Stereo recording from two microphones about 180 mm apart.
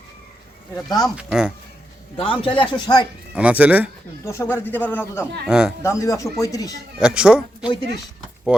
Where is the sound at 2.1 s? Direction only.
30° left (ahead or behind).